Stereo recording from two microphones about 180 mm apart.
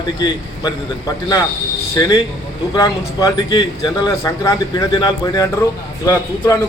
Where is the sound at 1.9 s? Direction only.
20° left (ahead or behind).